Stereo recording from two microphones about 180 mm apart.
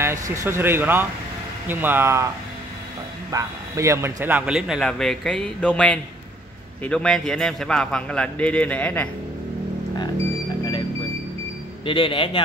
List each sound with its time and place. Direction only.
0.0 s speech: 15° right (ahead or behind)
3.3 s speech: 15° right (ahead or behind); by 9.1 s 10° left (ahead or behind)
11.8 s speech: 30° left (ahead or behind)